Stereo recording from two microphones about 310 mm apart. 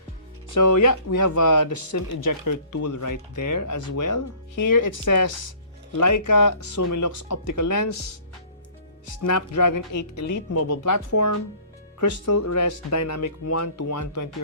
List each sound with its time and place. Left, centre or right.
0.5 s speech: left
9.2 s speech: left
10.5 s speech: left